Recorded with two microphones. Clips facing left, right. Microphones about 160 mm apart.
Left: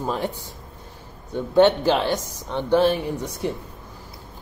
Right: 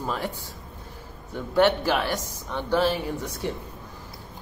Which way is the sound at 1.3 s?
20° left (ahead or behind).